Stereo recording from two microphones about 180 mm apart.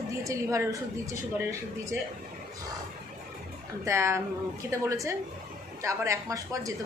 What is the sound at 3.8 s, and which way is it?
A woman's voice, 15° right (ahead or behind).